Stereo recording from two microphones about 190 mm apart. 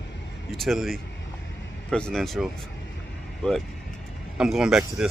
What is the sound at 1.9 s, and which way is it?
Speech, 5° left (ahead or behind).